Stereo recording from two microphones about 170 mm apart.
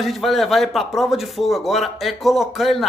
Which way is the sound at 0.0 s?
Centre (ahead or behind).